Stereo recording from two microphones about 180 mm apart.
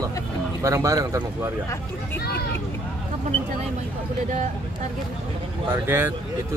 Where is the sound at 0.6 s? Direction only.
15° right (ahead or behind).